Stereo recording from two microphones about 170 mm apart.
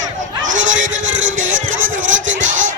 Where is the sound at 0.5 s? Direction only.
90° right.